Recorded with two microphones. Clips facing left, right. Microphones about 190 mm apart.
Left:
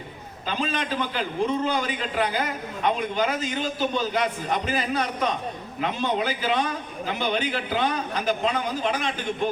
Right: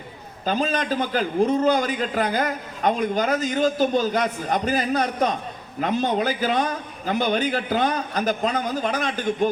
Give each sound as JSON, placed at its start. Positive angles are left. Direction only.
{"t": 0.4, "sound": "a man's voice", "side_deg": -40}